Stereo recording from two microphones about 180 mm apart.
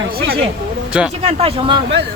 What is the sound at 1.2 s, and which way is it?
Speech, 35° right (ahead or behind).